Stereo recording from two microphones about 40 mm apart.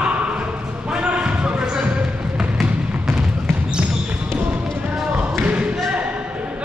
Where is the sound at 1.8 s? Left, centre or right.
Right.